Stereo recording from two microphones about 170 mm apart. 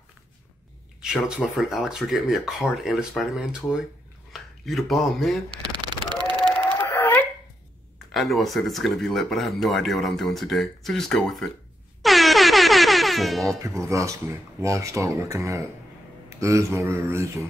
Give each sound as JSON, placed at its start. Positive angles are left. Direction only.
{"t": 1.0, "sound": "speech", "side_deg": 0}
{"t": 5.5, "sound": "a sound", "side_deg": -25}
{"t": 6.6, "sound": "a sound", "side_deg": 10}
{"t": 8.1, "sound": "speech", "side_deg": 0}
{"t": 12.0, "sound": "air horn", "side_deg": 0}
{"t": 13.8, "sound": "speech", "side_deg": -15}